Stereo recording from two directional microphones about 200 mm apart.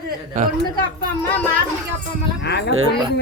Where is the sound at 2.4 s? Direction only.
55° left (ahead or behind).